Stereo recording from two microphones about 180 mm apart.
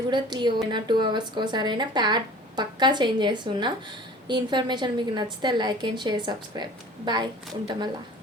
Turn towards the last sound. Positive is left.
turn(degrees=-25)  # may be behind; listen again after turning